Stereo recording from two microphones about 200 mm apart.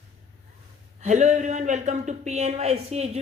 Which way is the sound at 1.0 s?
35° right (ahead or behind).